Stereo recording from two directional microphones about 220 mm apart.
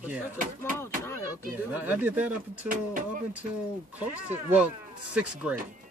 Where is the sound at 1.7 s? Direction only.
10° right (ahead or behind).